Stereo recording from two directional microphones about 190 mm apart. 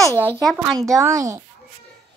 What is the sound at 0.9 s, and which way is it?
Speech, 15° right (ahead or behind).